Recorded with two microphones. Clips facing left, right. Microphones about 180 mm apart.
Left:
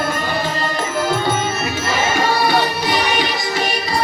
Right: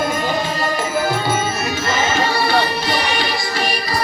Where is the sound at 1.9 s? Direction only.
10° left (ahead or behind).